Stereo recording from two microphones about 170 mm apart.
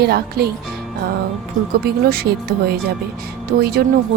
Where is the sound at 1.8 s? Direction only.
60° right (ahead or behind).